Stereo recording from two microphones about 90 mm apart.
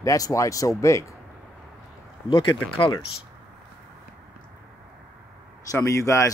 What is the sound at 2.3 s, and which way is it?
Speech, 70° left (ahead or behind).